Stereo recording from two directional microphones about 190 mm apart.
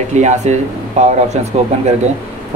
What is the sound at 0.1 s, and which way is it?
Speech, 40° right (ahead or behind).